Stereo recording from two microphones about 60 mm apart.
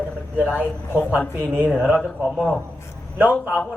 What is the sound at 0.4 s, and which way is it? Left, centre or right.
Speech, centre.